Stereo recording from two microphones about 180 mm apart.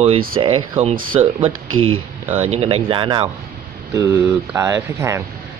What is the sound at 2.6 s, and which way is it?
Speech, 30° right (ahead or behind).